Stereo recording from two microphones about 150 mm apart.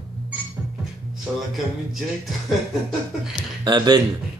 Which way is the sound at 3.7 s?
30° right (ahead or behind).